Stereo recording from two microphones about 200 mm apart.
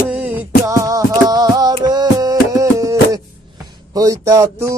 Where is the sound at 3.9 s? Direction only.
15° right (ahead or behind).